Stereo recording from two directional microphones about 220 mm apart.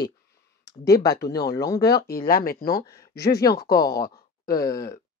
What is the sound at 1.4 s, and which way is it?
Speech, 15° left (ahead or behind).